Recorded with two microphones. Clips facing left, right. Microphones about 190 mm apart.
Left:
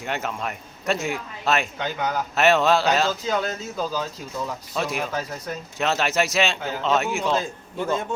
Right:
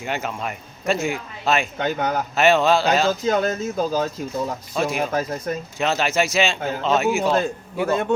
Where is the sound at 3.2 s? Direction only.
45° right (ahead or behind).